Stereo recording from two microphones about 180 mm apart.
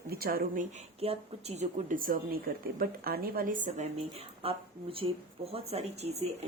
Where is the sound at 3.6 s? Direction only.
40° right (ahead or behind).